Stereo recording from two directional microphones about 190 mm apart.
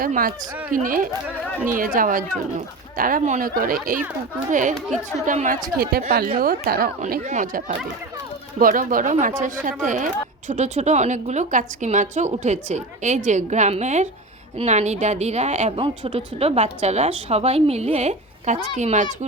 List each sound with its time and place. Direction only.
0.0 s a woman's voice: 50° right (ahead or behind)
5.7 s a woman's voice: 50° right (ahead or behind)